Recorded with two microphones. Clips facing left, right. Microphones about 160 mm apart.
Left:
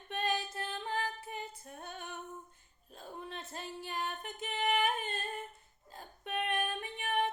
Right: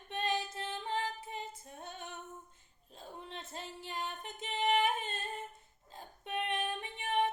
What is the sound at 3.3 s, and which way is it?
Singing, 5° left (ahead or behind).